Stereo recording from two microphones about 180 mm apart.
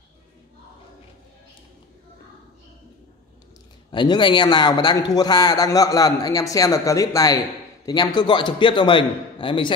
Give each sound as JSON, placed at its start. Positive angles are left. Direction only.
{"t": 3.9, "sound": "a man's voice", "side_deg": 25}